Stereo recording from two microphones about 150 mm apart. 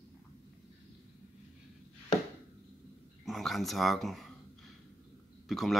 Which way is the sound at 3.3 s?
Centre (ahead or behind).